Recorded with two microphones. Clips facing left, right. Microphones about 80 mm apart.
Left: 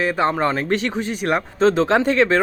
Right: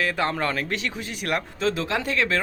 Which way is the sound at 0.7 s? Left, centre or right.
Left.